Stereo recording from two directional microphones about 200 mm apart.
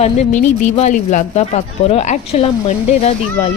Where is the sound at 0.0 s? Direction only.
35° left (ahead or behind).